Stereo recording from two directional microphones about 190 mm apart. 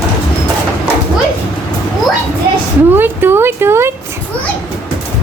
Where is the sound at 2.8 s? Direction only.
10° right (ahead or behind).